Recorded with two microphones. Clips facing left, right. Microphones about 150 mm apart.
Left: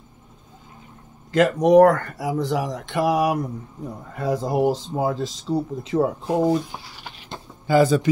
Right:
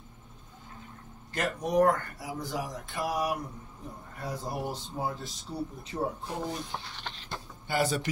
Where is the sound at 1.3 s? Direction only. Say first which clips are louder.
Left 14 dB; 90° left.